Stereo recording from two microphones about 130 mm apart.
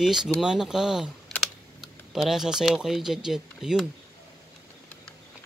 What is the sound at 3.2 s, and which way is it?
Speech, 5° right (ahead or behind).